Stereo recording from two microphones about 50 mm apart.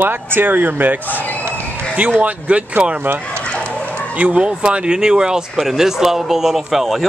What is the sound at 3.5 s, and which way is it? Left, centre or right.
Chicken, left.